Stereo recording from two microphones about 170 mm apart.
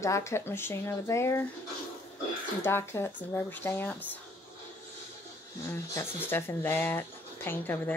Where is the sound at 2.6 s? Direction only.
15° left (ahead or behind).